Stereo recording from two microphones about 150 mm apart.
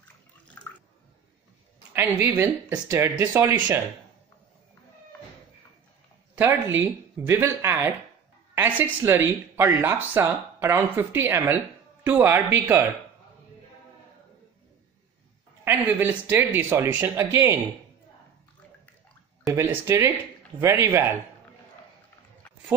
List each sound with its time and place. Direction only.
2.0 s a woman's voice: 10° right (ahead or behind)
6.3 s speech: 15° right (ahead or behind)
15.6 s speech: 15° right (ahead or behind)
19.4 s speech: 15° right (ahead or behind)